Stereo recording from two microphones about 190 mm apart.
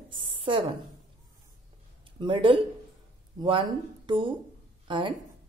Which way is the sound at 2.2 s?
25° right (ahead or behind).